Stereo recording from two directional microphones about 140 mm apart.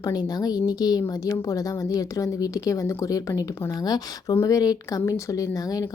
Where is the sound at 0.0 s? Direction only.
30° left (ahead or behind).